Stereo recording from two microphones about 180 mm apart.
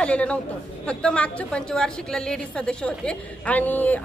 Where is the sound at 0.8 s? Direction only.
5° left (ahead or behind).